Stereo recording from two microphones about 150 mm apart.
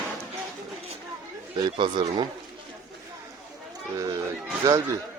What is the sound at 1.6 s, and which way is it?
Speech, 30° right (ahead or behind).